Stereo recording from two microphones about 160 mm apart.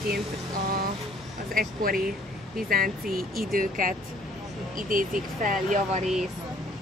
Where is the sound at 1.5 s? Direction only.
65° right (ahead or behind).